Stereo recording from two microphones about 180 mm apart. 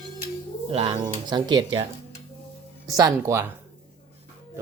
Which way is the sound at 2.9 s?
20° right (ahead or behind).